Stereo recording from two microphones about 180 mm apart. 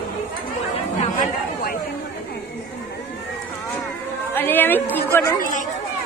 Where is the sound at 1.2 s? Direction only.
50° left (ahead or behind).